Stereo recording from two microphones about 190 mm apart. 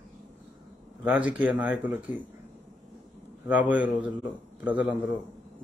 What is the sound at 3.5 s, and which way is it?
Speech, 10° right (ahead or behind).